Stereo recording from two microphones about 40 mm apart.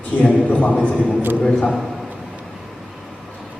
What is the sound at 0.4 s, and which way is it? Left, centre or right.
Speech, left.